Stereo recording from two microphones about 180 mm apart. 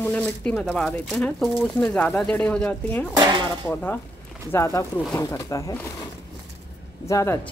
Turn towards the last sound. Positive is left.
turn(degrees=15)  # may be behind; listen again after turning